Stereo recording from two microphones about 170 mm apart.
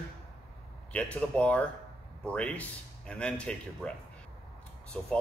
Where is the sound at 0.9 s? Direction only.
5° left (ahead or behind).